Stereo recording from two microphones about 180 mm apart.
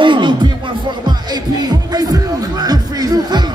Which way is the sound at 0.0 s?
25° right (ahead or behind).